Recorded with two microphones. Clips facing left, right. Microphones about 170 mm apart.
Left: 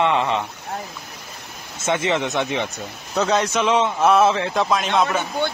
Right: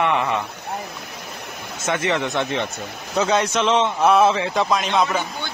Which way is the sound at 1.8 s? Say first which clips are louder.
Left 1 dB; 25° left (ahead or behind).